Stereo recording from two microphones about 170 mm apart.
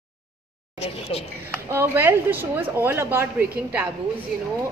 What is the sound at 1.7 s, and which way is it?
Speech, 15° right (ahead or behind).